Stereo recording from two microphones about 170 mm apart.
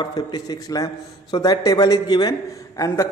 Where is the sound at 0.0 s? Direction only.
25° left (ahead or behind).